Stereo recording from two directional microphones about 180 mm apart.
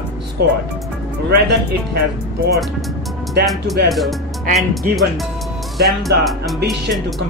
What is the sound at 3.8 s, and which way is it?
Speech, centre (ahead or behind).